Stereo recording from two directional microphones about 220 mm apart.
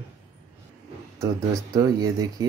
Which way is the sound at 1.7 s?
15° right (ahead or behind).